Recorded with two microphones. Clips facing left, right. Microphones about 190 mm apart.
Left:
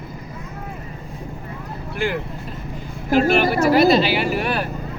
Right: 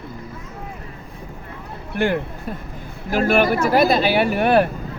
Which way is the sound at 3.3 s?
50° right (ahead or behind).